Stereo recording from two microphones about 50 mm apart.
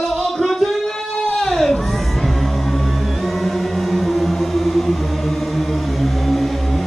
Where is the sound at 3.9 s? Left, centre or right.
Centre.